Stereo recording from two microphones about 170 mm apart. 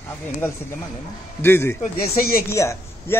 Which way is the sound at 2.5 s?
15° left (ahead or behind).